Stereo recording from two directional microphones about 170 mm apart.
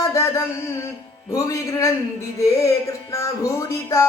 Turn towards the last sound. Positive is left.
turn(degrees=20)  # may be behind; listen again after turning